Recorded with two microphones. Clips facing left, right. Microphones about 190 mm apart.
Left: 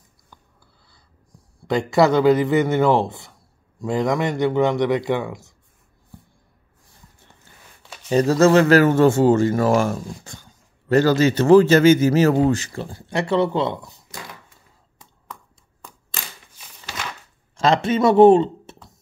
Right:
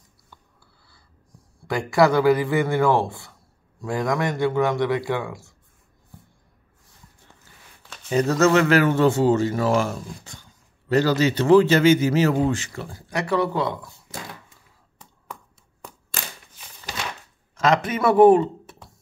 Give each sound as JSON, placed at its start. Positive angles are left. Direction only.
{"t": 0.3, "sound": "writing", "side_deg": 20}
{"t": 1.7, "sound": "a man's voice", "side_deg": 25}
{"t": 8.1, "sound": "a man's voice", "side_deg": 30}
{"t": 17.6, "sound": "speech", "side_deg": 30}